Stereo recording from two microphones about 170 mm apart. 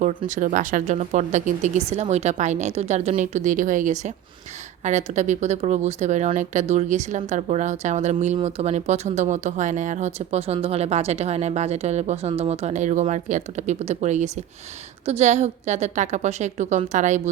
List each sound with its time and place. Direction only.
0.3 s speech: 50° right (ahead or behind)